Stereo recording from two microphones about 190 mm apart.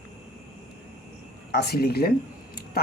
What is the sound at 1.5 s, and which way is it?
Speech, 60° left (ahead or behind).